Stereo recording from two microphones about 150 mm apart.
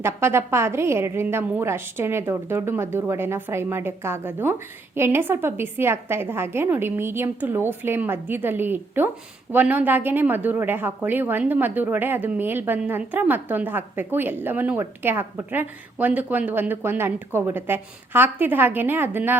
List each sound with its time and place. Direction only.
0.0 s a woman's voice: 15° right (ahead or behind)